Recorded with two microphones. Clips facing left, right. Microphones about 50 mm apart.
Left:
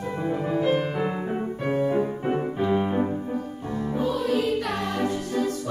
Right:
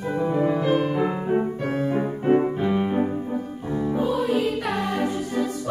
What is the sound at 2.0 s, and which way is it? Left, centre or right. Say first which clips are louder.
Music: right 5 dB; centre.